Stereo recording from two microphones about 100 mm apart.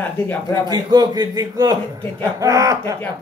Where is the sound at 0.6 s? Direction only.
45° right (ahead or behind).